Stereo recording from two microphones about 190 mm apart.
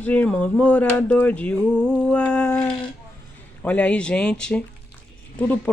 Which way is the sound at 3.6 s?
10° left (ahead or behind).